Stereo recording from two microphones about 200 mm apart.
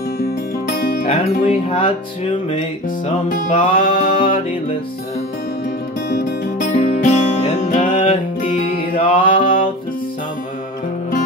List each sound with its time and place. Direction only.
0.9 s music: 40° left (ahead or behind)
3.5 s music: 25° left (ahead or behind)
6.6 s music: 40° left (ahead or behind)
9.0 s mantra: 25° left (ahead or behind)